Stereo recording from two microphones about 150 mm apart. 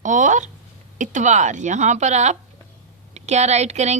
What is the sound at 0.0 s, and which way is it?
A woman's voice, 55° right (ahead or behind).